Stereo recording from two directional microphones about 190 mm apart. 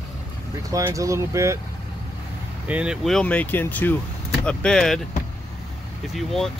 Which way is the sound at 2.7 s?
5° right (ahead or behind).